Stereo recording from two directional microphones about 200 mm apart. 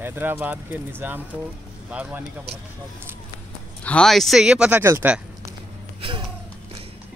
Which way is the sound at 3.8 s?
5° left (ahead or behind).